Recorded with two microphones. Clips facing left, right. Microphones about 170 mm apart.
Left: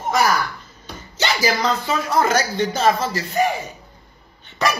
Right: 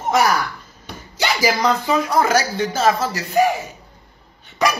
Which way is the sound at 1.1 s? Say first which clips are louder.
Right 1 dB; 10° right (ahead or behind).